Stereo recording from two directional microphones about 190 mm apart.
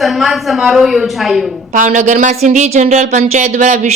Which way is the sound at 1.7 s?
40° right (ahead or behind).